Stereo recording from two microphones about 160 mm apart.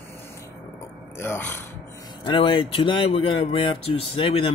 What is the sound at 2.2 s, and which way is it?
Speech, 30° left (ahead or behind).